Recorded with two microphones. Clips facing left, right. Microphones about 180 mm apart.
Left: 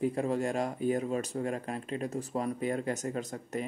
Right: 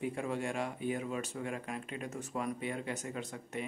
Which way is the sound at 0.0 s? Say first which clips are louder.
Left 6 dB; 40° left (ahead or behind).